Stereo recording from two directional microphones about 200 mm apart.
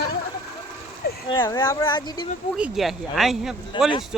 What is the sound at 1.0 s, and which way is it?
Vehicle, 50° left (ahead or behind).